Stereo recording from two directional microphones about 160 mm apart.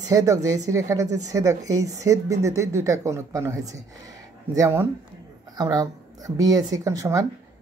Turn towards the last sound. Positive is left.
turn(degrees=-20)  # may be behind; listen again after turning